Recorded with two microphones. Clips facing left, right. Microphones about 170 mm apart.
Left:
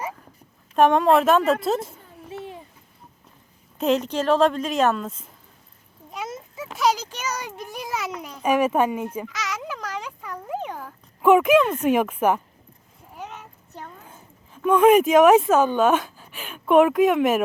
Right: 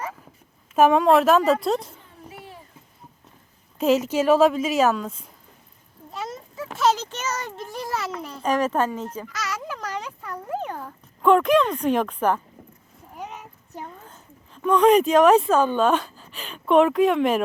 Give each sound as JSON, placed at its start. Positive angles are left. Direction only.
{"t": 0.8, "sound": "a woman's voice", "side_deg": 0}
{"t": 2.3, "sound": "babbling", "side_deg": 20}
{"t": 3.8, "sound": "a woman's voice", "side_deg": -5}
{"t": 6.2, "sound": "a sound", "side_deg": 0}
{"t": 7.8, "sound": "a woman's voice", "side_deg": 0}
{"t": 8.1, "sound": "a child's voice", "side_deg": 15}
{"t": 9.4, "sound": "a sound", "side_deg": -5}
{"t": 10.5, "sound": "speech", "side_deg": 0}
{"t": 13.1, "sound": "a sound", "side_deg": -5}
{"t": 14.0, "sound": "speech", "side_deg": 10}